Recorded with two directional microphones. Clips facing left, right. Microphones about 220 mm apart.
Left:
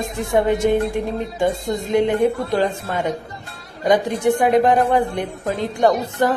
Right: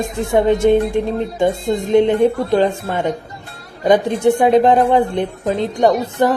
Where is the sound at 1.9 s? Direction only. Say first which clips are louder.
Right 4 dB; 25° right (ahead or behind).